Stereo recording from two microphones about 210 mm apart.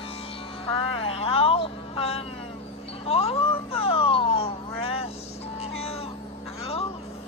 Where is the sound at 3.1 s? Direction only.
30° left (ahead or behind).